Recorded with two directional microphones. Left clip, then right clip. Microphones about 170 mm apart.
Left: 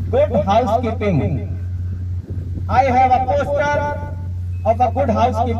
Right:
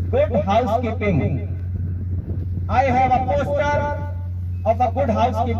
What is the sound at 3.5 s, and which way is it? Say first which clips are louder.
A man's voice: left 2 dB; 20° right (ahead or behind).